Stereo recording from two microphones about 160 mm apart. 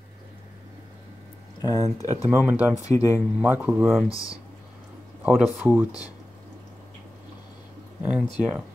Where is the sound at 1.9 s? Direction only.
20° left (ahead or behind).